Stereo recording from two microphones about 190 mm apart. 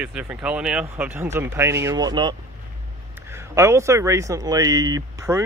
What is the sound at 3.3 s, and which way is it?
Speech, 15° right (ahead or behind).